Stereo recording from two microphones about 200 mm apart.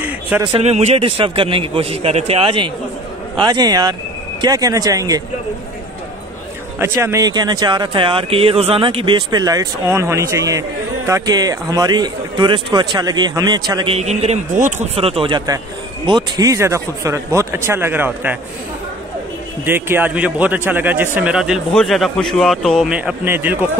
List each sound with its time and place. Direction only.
0.4 s a man's voice: 30° right (ahead or behind)
6.8 s a man's voice: 15° right (ahead or behind)
19.6 s a man's voice: 10° right (ahead or behind)